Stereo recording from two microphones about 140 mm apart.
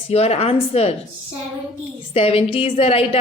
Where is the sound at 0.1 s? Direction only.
50° left (ahead or behind).